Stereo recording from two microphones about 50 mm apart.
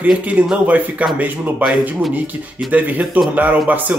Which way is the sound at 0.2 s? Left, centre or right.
Right.